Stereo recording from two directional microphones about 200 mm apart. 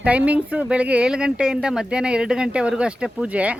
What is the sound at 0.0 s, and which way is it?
Speech, 5° right (ahead or behind).